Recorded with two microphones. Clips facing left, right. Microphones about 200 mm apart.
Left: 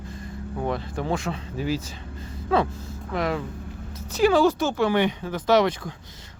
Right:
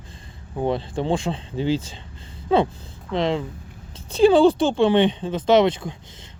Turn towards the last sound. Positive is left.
turn(degrees=-25)  # may be behind; listen again after turning